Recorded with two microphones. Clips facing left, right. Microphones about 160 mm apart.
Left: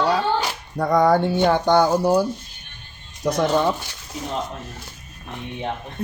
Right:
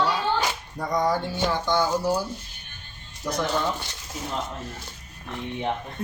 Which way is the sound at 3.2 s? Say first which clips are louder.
Left 7 dB; 80° left.